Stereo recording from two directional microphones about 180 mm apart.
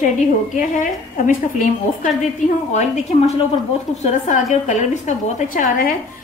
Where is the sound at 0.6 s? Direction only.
45° left (ahead or behind).